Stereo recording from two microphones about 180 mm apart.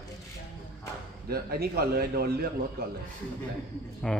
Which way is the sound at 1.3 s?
60° right (ahead or behind).